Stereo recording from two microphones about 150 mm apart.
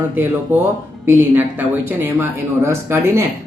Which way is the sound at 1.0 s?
15° right (ahead or behind).